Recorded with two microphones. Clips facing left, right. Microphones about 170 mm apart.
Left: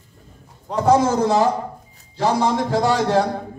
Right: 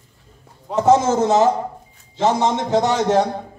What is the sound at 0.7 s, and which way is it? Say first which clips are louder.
A man's voice: right 1 dB; 20° right (ahead or behind).